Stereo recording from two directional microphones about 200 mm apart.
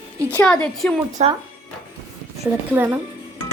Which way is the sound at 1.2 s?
30° right (ahead or behind).